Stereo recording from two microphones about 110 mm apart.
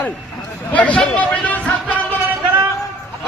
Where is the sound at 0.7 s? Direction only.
10° left (ahead or behind).